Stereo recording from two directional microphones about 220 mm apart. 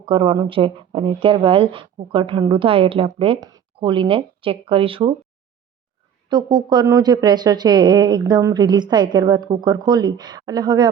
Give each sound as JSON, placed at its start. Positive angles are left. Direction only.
{"t": 0.0, "sound": "speech", "side_deg": -25}
{"t": 6.2, "sound": "speech", "side_deg": -20}